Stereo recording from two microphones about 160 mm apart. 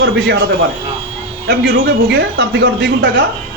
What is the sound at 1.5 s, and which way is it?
A man's voice, 90° right.